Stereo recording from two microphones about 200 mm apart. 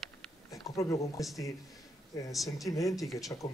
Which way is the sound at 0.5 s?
15° left (ahead or behind).